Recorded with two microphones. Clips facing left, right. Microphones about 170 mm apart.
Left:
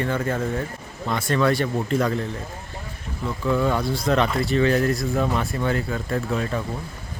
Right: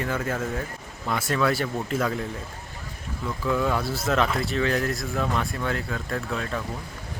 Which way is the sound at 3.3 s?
Centre (ahead or behind).